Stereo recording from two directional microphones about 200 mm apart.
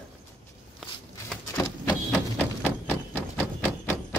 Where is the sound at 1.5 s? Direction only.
15° left (ahead or behind).